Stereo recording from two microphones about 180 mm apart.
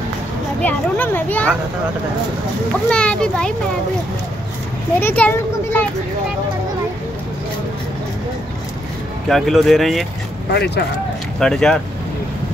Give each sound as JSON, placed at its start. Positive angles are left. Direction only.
{"t": 0.6, "sound": "a child's voice", "side_deg": 10}
{"t": 2.9, "sound": "speech", "side_deg": 5}
{"t": 5.0, "sound": "a child's voice", "side_deg": 10}
{"t": 9.3, "sound": "speech", "side_deg": 0}
{"t": 10.5, "sound": "speech", "side_deg": 65}
{"t": 11.3, "sound": "speech", "side_deg": 5}